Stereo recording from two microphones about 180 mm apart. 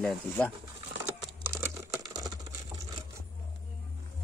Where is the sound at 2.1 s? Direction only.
20° right (ahead or behind).